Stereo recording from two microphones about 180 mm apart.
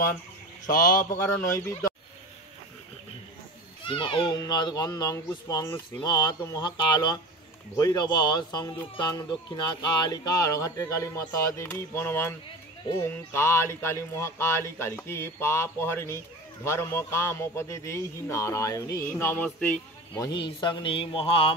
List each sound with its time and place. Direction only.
0.7 s speech: 20° left (ahead or behind)
3.8 s speech: 30° left (ahead or behind); by 19.8 s 10° left (ahead or behind)
20.2 s speech: 25° left (ahead or behind)